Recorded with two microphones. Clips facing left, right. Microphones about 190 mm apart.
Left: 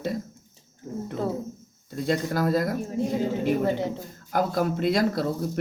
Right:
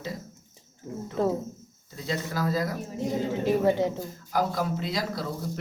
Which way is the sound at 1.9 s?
55° left (ahead or behind).